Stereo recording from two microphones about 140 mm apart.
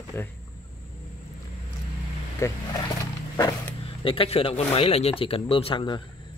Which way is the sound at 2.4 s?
20° left (ahead or behind).